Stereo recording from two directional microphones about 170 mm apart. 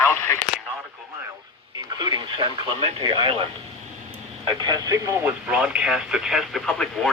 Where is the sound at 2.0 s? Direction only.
25° right (ahead or behind).